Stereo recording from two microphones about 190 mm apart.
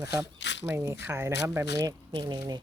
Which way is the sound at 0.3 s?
70° left (ahead or behind).